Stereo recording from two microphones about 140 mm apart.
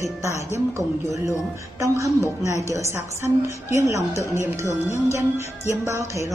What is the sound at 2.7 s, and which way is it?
A woman's voice, 20° right (ahead or behind).